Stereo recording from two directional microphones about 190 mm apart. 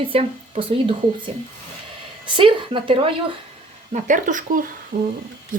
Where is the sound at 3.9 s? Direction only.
40° right (ahead or behind).